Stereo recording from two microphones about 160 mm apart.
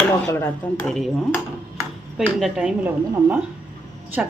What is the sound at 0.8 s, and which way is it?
A woman's voice, 5° left (ahead or behind).